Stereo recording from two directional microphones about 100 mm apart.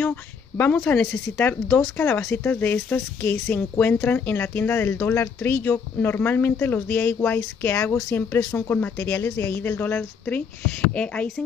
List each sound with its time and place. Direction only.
0.0 s a woman's voice: 20° left (ahead or behind)